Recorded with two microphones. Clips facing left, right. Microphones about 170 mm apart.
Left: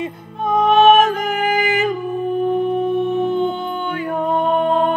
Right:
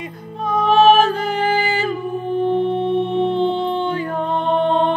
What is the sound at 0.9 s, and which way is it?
Music, 30° right (ahead or behind).